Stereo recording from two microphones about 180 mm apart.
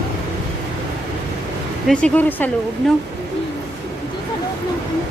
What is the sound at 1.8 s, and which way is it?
Speech, 5° left (ahead or behind).